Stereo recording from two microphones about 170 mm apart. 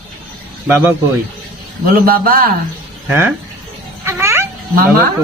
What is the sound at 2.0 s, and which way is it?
Speech, 60° right (ahead or behind).